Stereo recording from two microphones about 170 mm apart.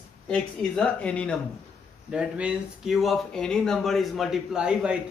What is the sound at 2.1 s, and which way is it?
Speech, 5° right (ahead or behind).